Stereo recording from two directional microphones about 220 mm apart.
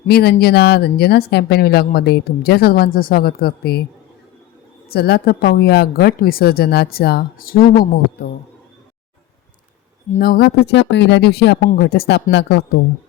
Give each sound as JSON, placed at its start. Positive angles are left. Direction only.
{"t": 0.1, "sound": "speech", "side_deg": 45}
{"t": 4.9, "sound": "speech", "side_deg": 45}
{"t": 10.2, "sound": "speech", "side_deg": 45}